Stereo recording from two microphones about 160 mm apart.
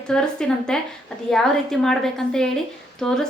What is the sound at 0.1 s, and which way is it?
A woman's voice, 5° left (ahead or behind).